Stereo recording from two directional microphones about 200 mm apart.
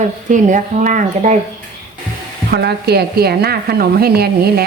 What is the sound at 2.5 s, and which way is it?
Speech, 55° right (ahead or behind).